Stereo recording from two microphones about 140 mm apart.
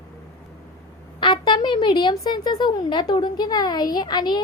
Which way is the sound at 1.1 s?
35° left (ahead or behind).